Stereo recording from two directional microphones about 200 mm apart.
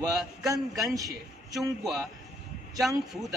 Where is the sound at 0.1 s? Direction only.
Centre (ahead or behind).